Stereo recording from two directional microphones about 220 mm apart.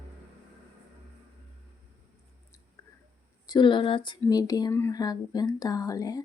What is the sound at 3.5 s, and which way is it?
Speech, 20° left (ahead or behind).